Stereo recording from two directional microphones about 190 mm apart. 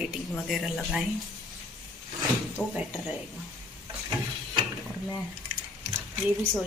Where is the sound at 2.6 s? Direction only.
10° left (ahead or behind).